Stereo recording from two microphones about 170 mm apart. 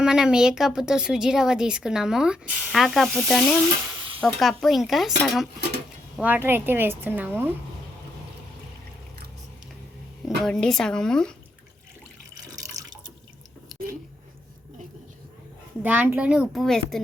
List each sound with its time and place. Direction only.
0.0 s a woman's voice: 5° right (ahead or behind)
10.2 s a woman's voice: 5° left (ahead or behind)
12.3 s water: 20° right (ahead or behind)
15.8 s a woman's voice: 10° right (ahead or behind)